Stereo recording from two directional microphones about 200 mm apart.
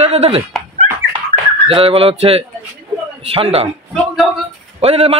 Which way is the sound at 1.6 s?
30° right (ahead or behind).